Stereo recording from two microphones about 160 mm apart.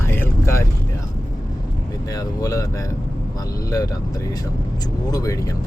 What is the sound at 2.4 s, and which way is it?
Speech, 20° left (ahead or behind).